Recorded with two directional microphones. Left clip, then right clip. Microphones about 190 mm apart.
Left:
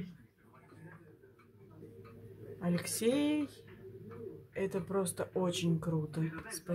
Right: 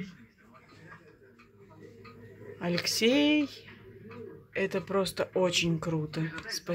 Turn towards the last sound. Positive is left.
turn(degrees=-20)  # may be behind; listen again after turning